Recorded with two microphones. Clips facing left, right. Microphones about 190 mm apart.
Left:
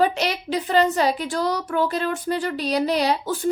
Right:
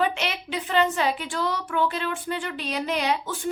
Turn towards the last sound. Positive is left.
turn(degrees=35)  # may be behind; listen again after turning